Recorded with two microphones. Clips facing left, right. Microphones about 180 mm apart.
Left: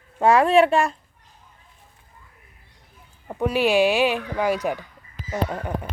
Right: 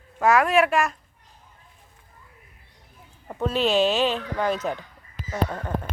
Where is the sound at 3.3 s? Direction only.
10° left (ahead or behind).